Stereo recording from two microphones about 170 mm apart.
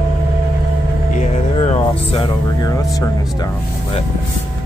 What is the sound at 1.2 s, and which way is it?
Speech, 35° left (ahead or behind).